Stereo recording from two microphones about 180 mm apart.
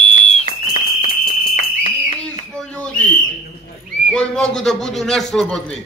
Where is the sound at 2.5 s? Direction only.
10° left (ahead or behind).